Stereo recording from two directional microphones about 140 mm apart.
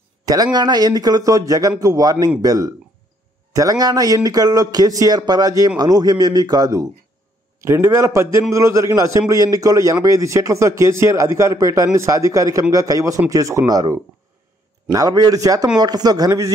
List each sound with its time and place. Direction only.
0.2 s speech: 25° right (ahead or behind)